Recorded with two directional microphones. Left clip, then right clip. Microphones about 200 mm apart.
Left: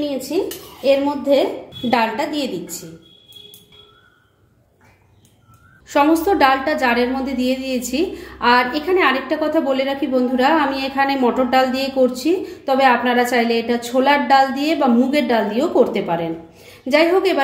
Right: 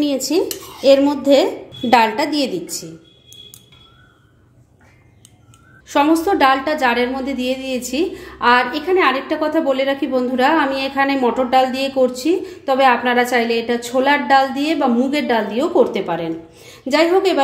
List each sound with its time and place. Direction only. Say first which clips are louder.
0.0 s a woman's voice: right 3 dB; 40° right (ahead or behind)
5.9 s a woman's voice: even; 15° right (ahead or behind)